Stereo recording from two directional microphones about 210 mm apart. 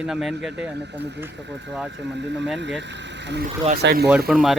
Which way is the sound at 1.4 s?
55° right (ahead or behind).